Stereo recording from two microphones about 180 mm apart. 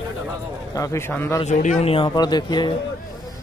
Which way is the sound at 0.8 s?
15° left (ahead or behind).